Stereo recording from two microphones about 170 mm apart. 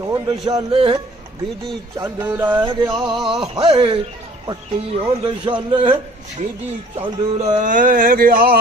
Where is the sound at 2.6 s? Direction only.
30° right (ahead or behind).